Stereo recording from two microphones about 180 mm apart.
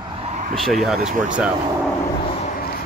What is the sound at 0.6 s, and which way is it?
Speech, centre (ahead or behind).